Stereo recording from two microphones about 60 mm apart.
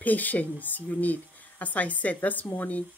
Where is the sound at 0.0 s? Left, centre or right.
Left.